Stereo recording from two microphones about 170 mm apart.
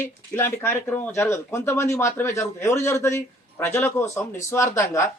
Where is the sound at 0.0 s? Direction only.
15° left (ahead or behind).